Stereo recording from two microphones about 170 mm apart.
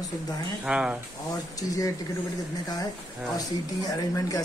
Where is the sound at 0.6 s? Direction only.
5° right (ahead or behind).